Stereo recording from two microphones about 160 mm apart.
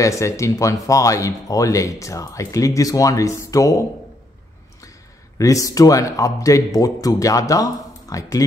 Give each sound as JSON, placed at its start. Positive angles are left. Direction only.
{"t": 0.0, "sound": "speech", "side_deg": 20}
{"t": 5.4, "sound": "speech", "side_deg": 20}